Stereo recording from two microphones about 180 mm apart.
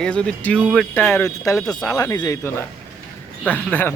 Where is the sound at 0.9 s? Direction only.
10° left (ahead or behind).